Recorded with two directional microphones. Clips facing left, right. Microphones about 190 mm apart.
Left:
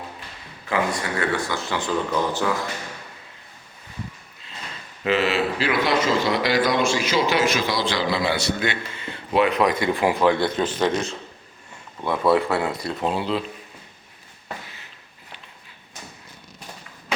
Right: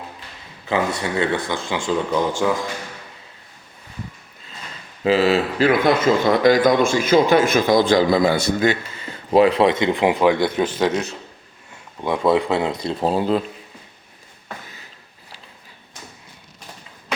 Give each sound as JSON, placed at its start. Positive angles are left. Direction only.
{"t": 0.7, "sound": "speech", "side_deg": -25}
{"t": 5.0, "sound": "a man's voice", "side_deg": -35}
{"t": 12.0, "sound": "speech", "side_deg": -15}